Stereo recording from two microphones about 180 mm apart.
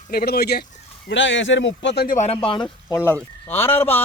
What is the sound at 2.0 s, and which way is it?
Speech, 40° left (ahead or behind).